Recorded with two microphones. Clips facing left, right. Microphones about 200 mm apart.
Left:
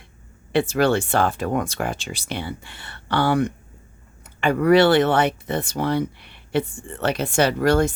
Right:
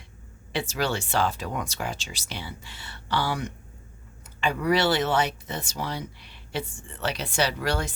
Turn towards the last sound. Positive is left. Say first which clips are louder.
# left 9 dB
turn(degrees=50)  # may be behind; listen again after turning